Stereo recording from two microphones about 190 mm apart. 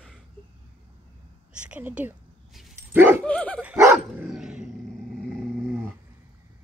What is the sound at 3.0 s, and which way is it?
Dog, 10° right (ahead or behind).